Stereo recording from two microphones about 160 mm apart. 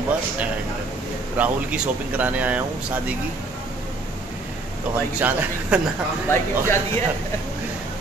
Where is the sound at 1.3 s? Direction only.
10° right (ahead or behind).